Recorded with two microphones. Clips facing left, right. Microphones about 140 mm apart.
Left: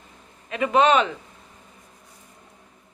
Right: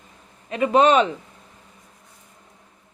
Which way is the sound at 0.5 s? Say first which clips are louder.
Right 2 dB; 35° right (ahead or behind).